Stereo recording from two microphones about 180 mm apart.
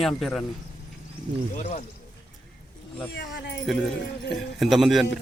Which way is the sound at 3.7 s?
Centre (ahead or behind).